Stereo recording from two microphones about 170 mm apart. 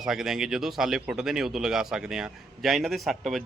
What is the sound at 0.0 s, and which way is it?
A man's voice, centre (ahead or behind).